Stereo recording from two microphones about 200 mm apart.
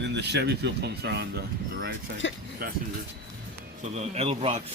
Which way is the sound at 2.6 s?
50° right (ahead or behind).